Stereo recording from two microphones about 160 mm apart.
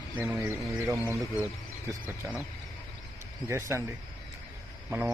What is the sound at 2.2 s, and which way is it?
Speech, 10° right (ahead or behind).